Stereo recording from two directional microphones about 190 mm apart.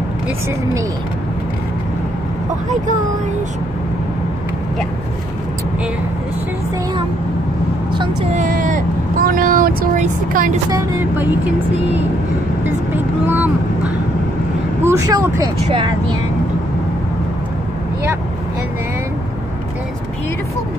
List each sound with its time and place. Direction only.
8.0 s speech: 25° right (ahead or behind)
8.4 s speech: 45° right (ahead or behind)
10.7 s speech: 10° right (ahead or behind)
12.6 s vehicle: 10° right (ahead or behind)
14.8 s speech: 15° right (ahead or behind)